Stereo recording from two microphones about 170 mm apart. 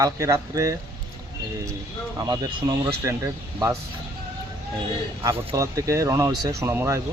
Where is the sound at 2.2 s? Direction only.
20° right (ahead or behind).